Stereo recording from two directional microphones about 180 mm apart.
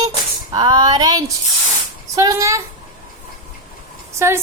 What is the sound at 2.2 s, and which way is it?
Speech, 15° right (ahead or behind).